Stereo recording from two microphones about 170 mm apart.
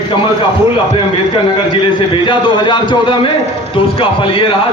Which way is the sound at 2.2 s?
30° left (ahead or behind).